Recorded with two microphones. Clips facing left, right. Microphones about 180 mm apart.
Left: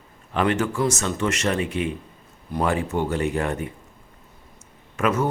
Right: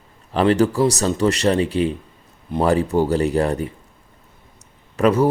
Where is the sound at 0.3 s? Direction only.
35° right (ahead or behind).